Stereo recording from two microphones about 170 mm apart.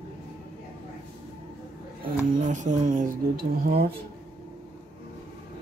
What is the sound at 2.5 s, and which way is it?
Speech, 45° right (ahead or behind).